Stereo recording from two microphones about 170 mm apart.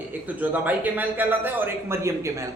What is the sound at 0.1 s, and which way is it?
A man's voice, 10° right (ahead or behind).